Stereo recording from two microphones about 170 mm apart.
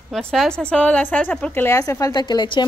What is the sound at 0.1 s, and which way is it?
Speech, 5° left (ahead or behind).